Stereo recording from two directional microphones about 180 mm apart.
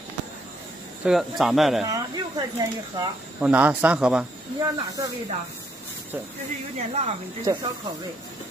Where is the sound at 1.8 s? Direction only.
20° right (ahead or behind).